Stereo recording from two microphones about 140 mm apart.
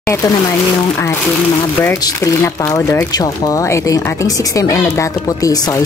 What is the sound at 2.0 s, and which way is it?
Speech, 25° left (ahead or behind).